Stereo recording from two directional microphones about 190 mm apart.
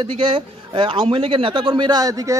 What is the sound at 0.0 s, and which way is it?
A man's voice, 25° right (ahead or behind).